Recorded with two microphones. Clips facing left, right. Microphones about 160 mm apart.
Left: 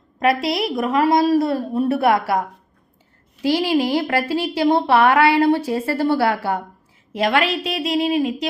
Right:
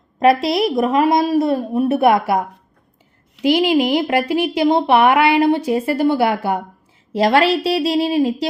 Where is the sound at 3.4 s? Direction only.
20° right (ahead or behind).